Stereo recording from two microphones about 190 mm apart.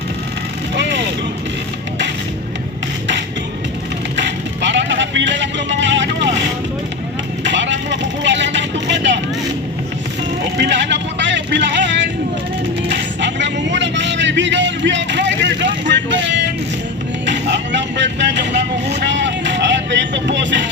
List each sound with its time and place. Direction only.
4.2 s music: 70° right (ahead or behind)
7.4 s vehicle: 70° right (ahead or behind)
10.6 s vehicle: 70° right (ahead or behind)
12.9 s music: 70° right (ahead or behind)
17.2 s vehicle: 70° right (ahead or behind)